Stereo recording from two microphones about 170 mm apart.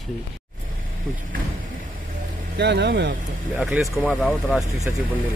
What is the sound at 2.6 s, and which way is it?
Speech, 80° right.